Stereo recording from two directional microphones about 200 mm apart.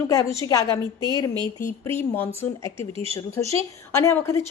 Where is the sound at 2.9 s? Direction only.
30° right (ahead or behind).